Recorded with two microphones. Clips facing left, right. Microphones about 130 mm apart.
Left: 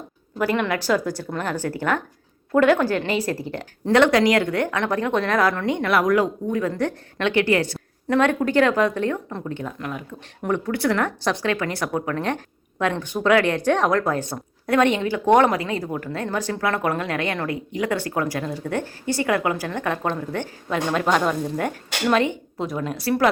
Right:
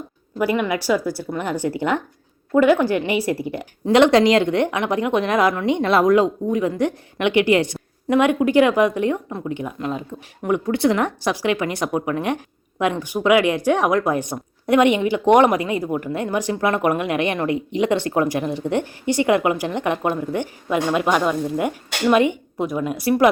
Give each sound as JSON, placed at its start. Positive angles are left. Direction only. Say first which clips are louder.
{"t": 0.3, "sound": "speech", "louder": "right 2 dB", "side_deg": -10}